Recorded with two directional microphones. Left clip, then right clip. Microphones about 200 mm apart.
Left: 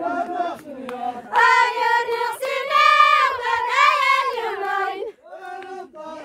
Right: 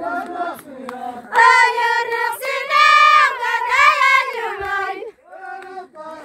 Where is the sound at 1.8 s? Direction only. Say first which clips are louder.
Right 2 dB; 35° right (ahead or behind).